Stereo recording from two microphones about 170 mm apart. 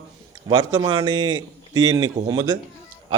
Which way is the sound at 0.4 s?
25° right (ahead or behind).